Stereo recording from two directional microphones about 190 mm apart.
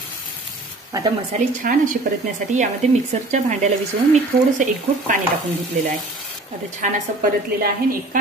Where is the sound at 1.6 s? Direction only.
50° right (ahead or behind).